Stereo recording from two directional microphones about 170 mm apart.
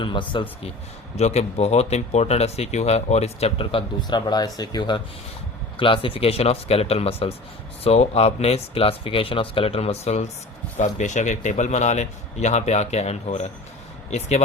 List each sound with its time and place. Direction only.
0.0 s speech: 30° left (ahead or behind)
1.1 s speech: 40° left (ahead or behind)